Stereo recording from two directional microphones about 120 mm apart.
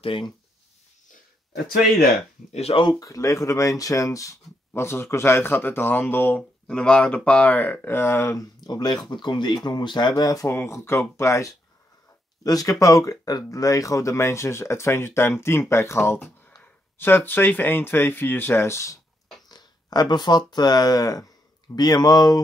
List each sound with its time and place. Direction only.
0.0 s speech: 45° left (ahead or behind)
2.5 s speech: 55° left (ahead or behind)
2.8 s speech: 30° left (ahead or behind)
8.5 s speech: 35° left (ahead or behind)
19.5 s speech: 35° left (ahead or behind)